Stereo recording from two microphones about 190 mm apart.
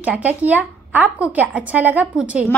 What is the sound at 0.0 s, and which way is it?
Speech, 10° right (ahead or behind).